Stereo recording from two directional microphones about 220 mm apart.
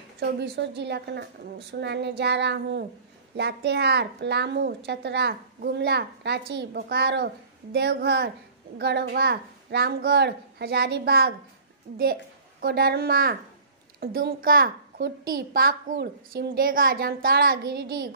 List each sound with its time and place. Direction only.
0.2 s a woman's voice: 50° right (ahead or behind)